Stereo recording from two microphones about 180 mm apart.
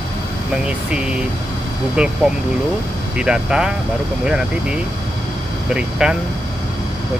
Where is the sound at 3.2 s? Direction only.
5° right (ahead or behind).